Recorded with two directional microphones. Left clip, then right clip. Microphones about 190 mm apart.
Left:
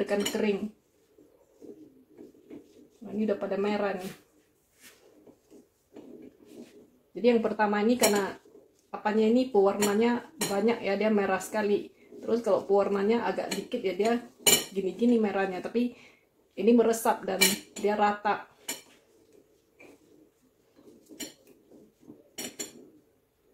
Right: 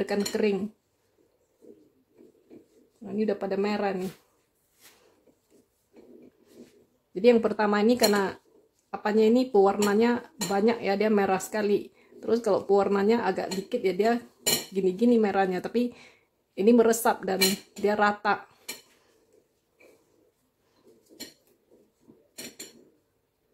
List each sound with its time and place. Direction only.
0.0 s speech: 60° right (ahead or behind)
3.3 s speech: 65° right (ahead or behind)
7.2 s speech: 55° right (ahead or behind)